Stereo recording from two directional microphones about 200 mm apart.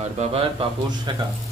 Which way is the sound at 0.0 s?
30° right (ahead or behind).